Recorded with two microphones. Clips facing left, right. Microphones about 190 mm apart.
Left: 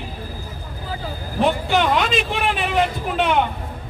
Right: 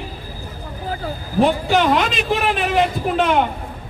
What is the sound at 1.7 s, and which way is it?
Speech, centre (ahead or behind).